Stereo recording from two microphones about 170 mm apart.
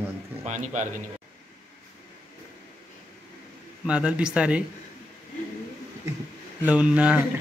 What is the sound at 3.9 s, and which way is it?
Speech, 5° right (ahead or behind).